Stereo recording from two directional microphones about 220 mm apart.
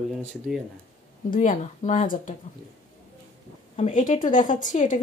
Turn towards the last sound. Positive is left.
turn(degrees=35)  # may be behind; listen again after turning